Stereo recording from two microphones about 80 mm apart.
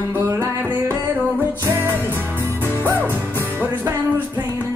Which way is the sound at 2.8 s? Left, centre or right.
Right.